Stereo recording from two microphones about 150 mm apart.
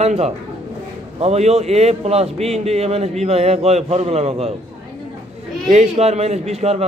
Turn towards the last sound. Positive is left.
turn(degrees=-45)  # may be behind; listen again after turning